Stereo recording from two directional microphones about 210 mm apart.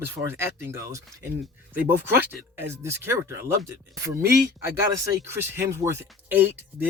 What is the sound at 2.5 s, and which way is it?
Speech, 10° right (ahead or behind).